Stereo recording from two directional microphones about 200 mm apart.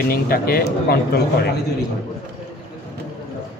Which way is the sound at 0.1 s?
50° left (ahead or behind).